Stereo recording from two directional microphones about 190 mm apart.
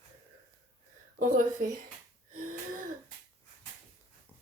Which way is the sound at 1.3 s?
45° right (ahead or behind).